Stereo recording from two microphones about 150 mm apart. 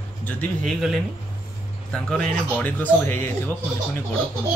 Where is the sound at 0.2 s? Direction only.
10° left (ahead or behind).